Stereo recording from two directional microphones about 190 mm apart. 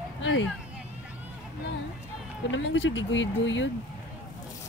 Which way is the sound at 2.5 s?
70° left (ahead or behind).